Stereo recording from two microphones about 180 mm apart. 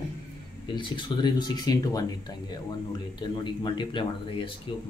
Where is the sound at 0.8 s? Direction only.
25° left (ahead or behind).